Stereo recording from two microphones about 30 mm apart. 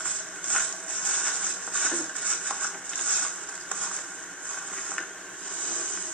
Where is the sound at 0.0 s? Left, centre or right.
Left.